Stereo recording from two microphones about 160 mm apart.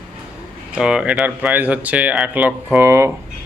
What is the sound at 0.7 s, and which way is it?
Speech, 5° right (ahead or behind).